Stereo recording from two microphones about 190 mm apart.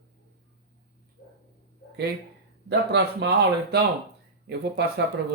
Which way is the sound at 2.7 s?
65° right (ahead or behind).